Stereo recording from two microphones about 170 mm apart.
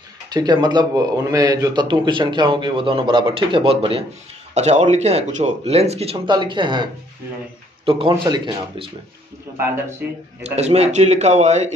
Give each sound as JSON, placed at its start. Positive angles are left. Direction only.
{"t": 0.3, "sound": "a man's voice", "side_deg": -25}
{"t": 10.0, "sound": "speech", "side_deg": -10}
{"t": 10.4, "sound": "speech", "side_deg": -40}